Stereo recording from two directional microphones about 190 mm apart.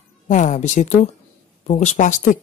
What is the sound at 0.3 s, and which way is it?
Speech, 40° left (ahead or behind).